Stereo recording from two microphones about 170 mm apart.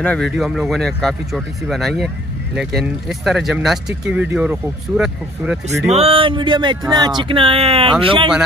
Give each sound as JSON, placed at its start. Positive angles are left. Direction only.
{"t": 0.0, "sound": "speech", "side_deg": 5}
{"t": 5.9, "sound": "speech", "side_deg": -35}